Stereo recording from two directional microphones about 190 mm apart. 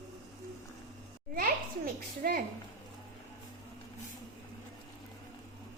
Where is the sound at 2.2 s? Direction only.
50° right (ahead or behind).